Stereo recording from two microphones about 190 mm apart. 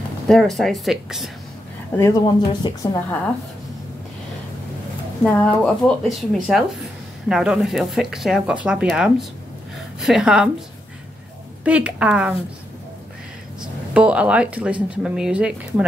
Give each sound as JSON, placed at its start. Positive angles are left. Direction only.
{"t": 0.3, "sound": "speech", "side_deg": 0}
{"t": 2.0, "sound": "a woman's voice", "side_deg": 15}
{"t": 5.2, "sound": "speech", "side_deg": 5}
{"t": 11.6, "sound": "speech", "side_deg": -5}
{"t": 13.9, "sound": "speech", "side_deg": -5}